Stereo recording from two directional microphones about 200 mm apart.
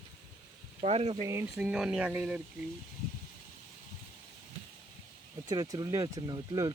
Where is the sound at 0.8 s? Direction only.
30° right (ahead or behind).